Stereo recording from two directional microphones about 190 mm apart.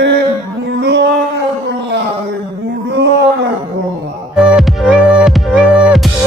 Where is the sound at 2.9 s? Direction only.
65° right (ahead or behind).